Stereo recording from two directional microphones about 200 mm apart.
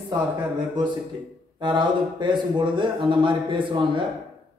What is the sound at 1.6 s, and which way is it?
Speech, 25° right (ahead or behind).